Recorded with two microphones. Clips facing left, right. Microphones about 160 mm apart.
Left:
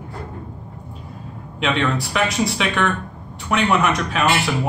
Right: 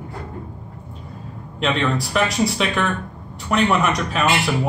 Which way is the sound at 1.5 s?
Centre (ahead or behind).